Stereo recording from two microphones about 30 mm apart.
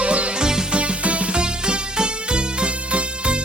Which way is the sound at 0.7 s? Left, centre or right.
Right.